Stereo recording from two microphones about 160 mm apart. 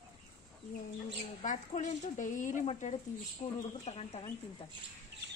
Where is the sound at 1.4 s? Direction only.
50° left (ahead or behind).